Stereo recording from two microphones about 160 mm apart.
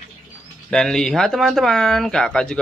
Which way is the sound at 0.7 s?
5° left (ahead or behind).